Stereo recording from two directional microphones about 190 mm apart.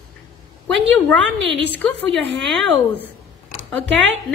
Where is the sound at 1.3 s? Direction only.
70° right (ahead or behind).